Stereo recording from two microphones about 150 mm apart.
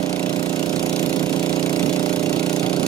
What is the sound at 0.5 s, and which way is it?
Engine, 25° left (ahead or behind).